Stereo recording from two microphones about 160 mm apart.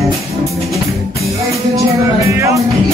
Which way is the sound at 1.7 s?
20° right (ahead or behind).